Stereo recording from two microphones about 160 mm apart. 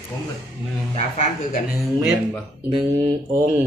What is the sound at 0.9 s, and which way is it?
Speech, 45° left (ahead or behind).